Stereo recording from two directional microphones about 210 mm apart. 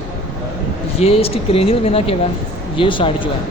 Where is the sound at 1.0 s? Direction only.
30° left (ahead or behind).